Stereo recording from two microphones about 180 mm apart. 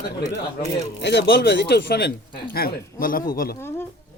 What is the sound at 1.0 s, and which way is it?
Speech, 65° left (ahead or behind).